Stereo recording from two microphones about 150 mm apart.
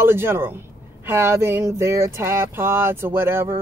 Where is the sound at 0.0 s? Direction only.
15° right (ahead or behind).